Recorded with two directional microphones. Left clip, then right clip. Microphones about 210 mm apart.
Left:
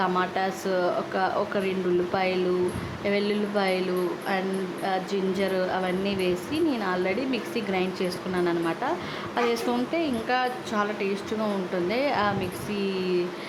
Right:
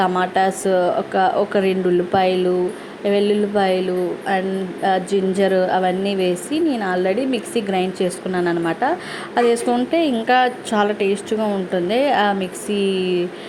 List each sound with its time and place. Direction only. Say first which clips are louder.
0.0 s a woman's voice: right 8 dB; 20° right (ahead or behind)